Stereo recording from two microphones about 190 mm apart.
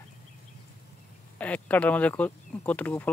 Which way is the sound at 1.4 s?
5° left (ahead or behind).